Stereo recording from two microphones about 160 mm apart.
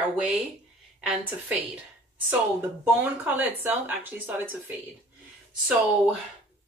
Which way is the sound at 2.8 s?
10° right (ahead or behind).